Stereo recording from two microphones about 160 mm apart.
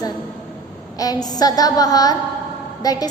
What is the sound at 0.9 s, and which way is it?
A woman's voice, 25° left (ahead or behind).